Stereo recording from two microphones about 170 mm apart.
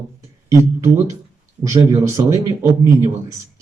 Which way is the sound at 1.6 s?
20° right (ahead or behind).